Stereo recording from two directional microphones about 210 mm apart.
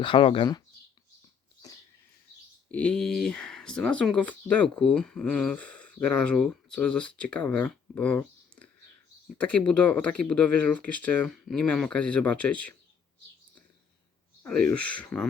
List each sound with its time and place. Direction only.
0.0 s speech: 25° left (ahead or behind)
2.7 s speech: 5° left (ahead or behind)
14.4 s speech: 5° left (ahead or behind)